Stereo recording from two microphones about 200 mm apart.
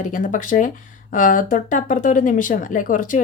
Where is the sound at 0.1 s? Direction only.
40° left (ahead or behind).